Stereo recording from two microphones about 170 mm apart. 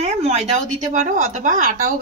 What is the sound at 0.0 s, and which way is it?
A woman's voice, 40° right (ahead or behind).